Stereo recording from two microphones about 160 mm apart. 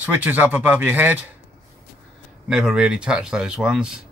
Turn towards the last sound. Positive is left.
turn(degrees=-5)  # may be behind; listen again after turning